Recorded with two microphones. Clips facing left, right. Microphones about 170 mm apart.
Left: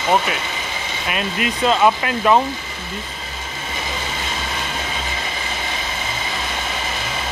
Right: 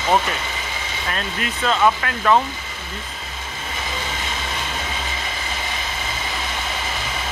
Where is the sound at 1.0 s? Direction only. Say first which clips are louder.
Left 4 dB; 15° left (ahead or behind).